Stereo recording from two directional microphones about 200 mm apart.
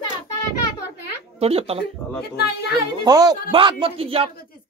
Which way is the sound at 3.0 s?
20° right (ahead or behind).